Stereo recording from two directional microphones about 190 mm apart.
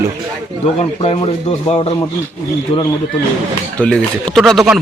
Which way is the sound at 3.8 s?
5° left (ahead or behind).